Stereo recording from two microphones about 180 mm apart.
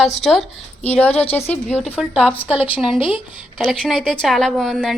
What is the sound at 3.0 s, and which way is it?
Speech, 30° left (ahead or behind).